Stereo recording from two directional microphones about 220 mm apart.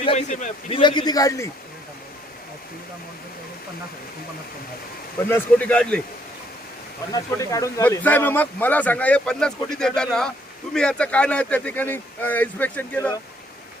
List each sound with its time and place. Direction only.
0.0 s a man's voice: 30° left (ahead or behind)
0.8 s speech: 20° left (ahead or behind)
5.3 s speech: 5° left (ahead or behind)
7.1 s speech: 15° left (ahead or behind)